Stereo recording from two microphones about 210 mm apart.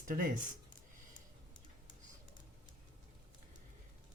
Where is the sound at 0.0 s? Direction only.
40° right (ahead or behind).